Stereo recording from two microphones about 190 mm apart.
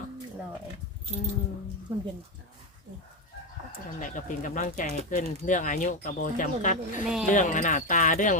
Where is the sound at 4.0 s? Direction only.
45° left (ahead or behind).